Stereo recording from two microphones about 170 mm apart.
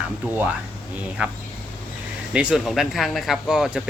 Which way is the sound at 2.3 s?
5° right (ahead or behind).